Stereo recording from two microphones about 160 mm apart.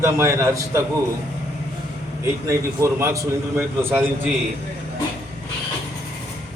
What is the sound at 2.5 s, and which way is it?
Speech, 15° right (ahead or behind).